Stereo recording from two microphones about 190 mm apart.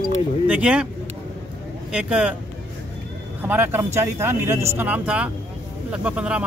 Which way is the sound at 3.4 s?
10° right (ahead or behind).